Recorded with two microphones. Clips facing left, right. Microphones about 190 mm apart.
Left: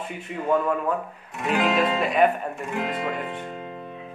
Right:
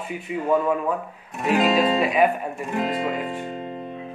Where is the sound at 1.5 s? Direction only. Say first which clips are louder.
Right 3 dB; 25° right (ahead or behind).